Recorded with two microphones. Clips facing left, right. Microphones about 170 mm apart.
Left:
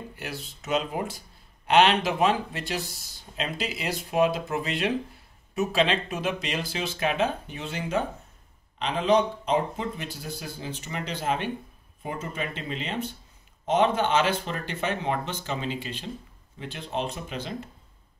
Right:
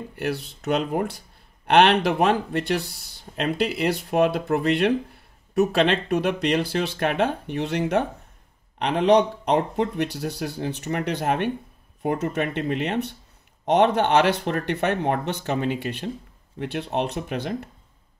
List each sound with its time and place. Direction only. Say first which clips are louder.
0.1 s speech: right 10 dB; 60° right (ahead or behind)